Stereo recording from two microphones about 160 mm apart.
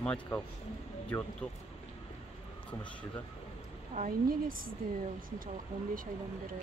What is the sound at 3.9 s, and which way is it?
Speech, 60° right (ahead or behind).